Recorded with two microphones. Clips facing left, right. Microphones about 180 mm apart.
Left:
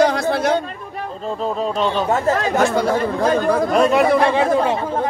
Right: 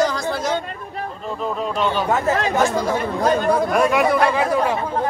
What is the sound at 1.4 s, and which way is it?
Speech, 30° left (ahead or behind).